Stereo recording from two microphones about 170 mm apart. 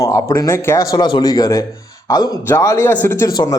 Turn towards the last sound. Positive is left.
turn(degrees=15)  # may be behind; listen again after turning